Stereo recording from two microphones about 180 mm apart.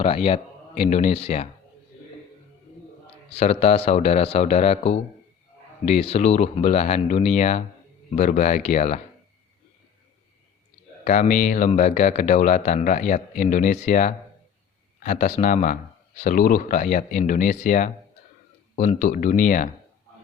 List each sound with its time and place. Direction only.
0.0 s speech: 35° left (ahead or behind)
3.3 s speech: 35° left (ahead or behind)
11.0 s speech: 45° left (ahead or behind)